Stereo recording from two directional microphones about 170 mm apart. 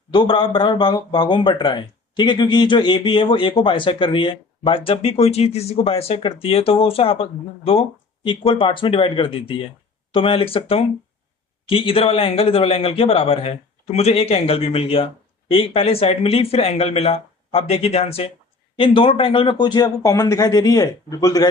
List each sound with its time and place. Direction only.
0.1 s a man's voice: 30° left (ahead or behind)